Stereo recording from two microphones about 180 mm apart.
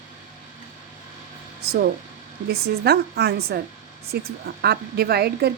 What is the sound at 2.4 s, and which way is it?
A woman's voice, 60° right (ahead or behind).